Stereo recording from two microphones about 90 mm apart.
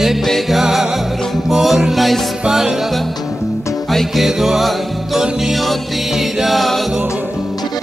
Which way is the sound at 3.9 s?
Centre (ahead or behind).